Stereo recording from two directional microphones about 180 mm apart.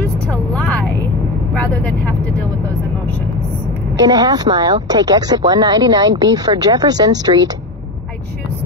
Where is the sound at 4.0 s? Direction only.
20° right (ahead or behind).